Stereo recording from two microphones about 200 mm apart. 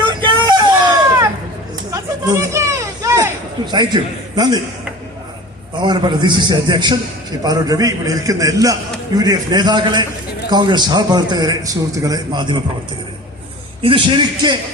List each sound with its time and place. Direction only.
0.0 s a sound: 20° right (ahead or behind)
1.9 s children playing: 15° right (ahead or behind)
5.8 s a man's voice: 20° right (ahead or behind)
13.8 s a man's voice: 25° right (ahead or behind)